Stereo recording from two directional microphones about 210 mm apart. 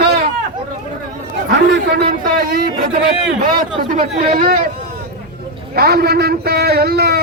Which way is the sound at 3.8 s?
40° right (ahead or behind).